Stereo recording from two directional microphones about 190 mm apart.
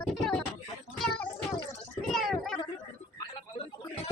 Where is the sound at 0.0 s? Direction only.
5° left (ahead or behind).